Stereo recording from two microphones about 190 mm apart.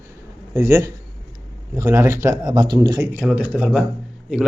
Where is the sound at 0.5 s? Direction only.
15° right (ahead or behind).